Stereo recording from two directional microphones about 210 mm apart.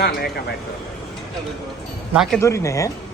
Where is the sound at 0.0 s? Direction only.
50° left (ahead or behind).